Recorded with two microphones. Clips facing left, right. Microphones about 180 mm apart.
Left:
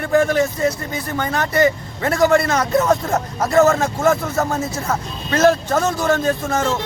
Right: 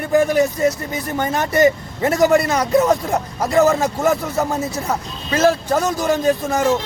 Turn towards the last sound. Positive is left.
turn(degrees=-15)  # may be behind; listen again after turning